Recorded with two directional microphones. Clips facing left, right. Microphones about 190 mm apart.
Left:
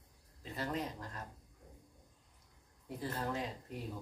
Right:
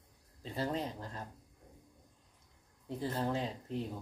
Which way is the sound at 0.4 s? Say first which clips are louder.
Right 3 dB; 30° right (ahead or behind).